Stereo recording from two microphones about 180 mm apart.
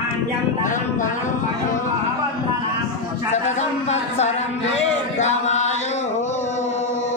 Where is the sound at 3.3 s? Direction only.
40° left (ahead or behind).